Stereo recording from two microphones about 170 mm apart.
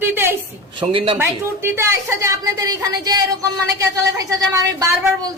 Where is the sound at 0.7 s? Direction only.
30° right (ahead or behind).